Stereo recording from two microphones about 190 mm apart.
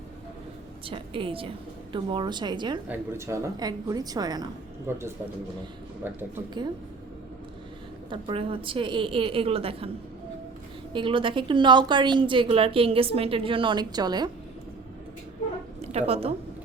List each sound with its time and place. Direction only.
0.9 s a woman's voice: 30° right (ahead or behind); by 5.0 s 10° right (ahead or behind)
6.1 s speech: 10° right (ahead or behind)
8.1 s a woman's voice: 30° right (ahead or behind)
10.9 s a woman's voice: 25° right (ahead or behind)
15.8 s a woman's voice: 35° right (ahead or behind)